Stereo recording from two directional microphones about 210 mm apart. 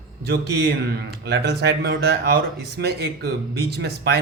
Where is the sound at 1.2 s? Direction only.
55° right (ahead or behind).